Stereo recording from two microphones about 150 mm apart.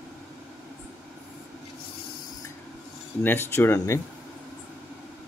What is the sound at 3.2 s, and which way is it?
Speech, 15° left (ahead or behind).